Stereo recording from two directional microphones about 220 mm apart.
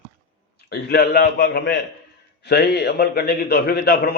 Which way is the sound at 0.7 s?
45° left (ahead or behind).